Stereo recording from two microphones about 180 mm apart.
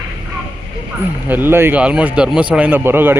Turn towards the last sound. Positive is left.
turn(degrees=-10)  # may be behind; listen again after turning